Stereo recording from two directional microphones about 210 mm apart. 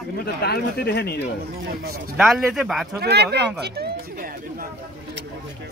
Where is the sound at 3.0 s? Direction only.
50° right (ahead or behind).